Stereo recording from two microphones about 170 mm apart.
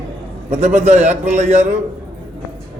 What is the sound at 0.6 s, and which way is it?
Speech, 40° right (ahead or behind).